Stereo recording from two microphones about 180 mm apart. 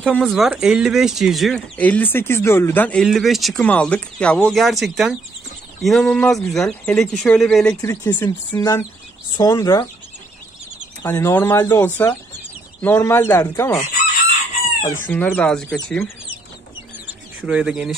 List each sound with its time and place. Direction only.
0.0 s speech: 5° left (ahead or behind)
7.7 s speech: 15° left (ahead or behind)
11.0 s speech: 15° left (ahead or behind)
14.9 s speech: 10° left (ahead or behind)
17.5 s speech: 5° right (ahead or behind)